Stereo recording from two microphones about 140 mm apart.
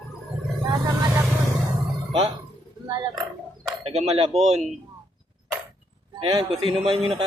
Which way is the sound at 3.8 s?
50° right (ahead or behind).